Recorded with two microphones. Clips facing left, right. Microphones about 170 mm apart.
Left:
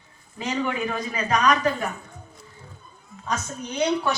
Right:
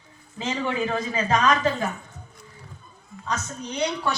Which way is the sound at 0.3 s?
25° right (ahead or behind).